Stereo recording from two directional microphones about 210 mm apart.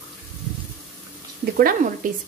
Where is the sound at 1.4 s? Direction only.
40° right (ahead or behind).